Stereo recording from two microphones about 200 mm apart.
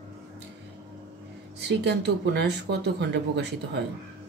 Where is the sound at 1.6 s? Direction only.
60° right (ahead or behind).